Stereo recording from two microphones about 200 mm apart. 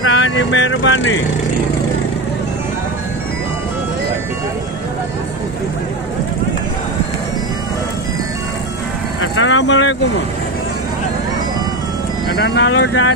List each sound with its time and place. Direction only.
0.0 s speech: 70° left (ahead or behind)
9.2 s vehicle: 80° left; by 9.9 s 65° left (ahead or behind)
12.4 s speech: 65° left (ahead or behind)